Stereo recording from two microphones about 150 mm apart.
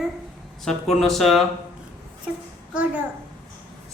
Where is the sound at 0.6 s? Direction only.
5° left (ahead or behind).